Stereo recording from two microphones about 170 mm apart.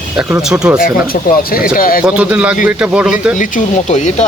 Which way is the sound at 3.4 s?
45° left (ahead or behind).